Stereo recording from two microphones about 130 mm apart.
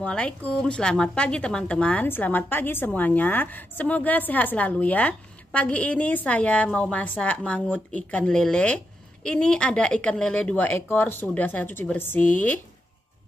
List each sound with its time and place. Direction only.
0.0 s a woman's voice: 10° left (ahead or behind)